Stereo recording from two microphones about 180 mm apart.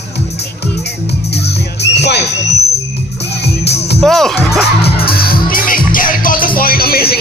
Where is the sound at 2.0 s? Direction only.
70° left (ahead or behind).